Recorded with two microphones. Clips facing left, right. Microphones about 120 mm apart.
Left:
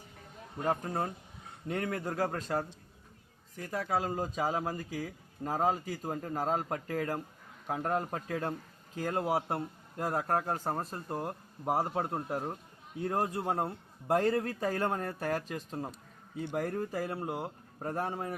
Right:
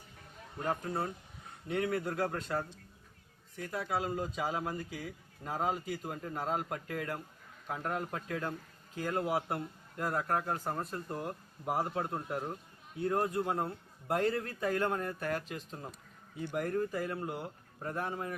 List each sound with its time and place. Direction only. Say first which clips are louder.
0.6 s a man's voice: left 2 dB; 40° left (ahead or behind)